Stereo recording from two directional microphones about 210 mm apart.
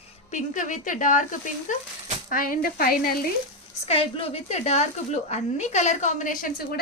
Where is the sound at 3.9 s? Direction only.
25° left (ahead or behind).